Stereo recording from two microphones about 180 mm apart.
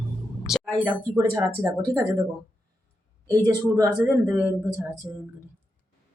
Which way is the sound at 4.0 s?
10° right (ahead or behind).